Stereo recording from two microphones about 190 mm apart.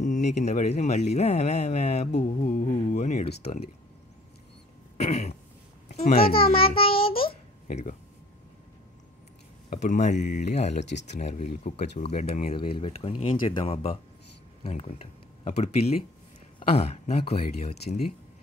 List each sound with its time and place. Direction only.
0.0 s speech: 40° left (ahead or behind)
5.9 s babbling: 35° left (ahead or behind)
6.1 s a child's voice: 50° left (ahead or behind)
6.5 s a child's voice: 30° left (ahead or behind)
9.7 s speech: 40° left (ahead or behind)